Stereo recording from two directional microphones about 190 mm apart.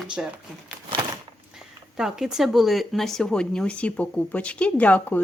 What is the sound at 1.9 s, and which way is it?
Speech, centre (ahead or behind).